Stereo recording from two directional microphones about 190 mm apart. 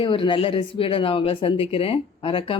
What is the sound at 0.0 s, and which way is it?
Speech, 25° left (ahead or behind).